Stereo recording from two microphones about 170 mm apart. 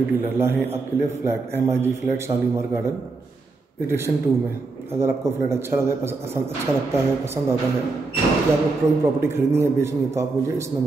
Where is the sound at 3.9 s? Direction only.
15° right (ahead or behind).